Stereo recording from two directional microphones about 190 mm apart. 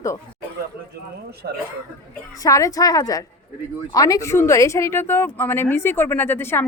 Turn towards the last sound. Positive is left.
turn(degrees=10)  # may be behind; listen again after turning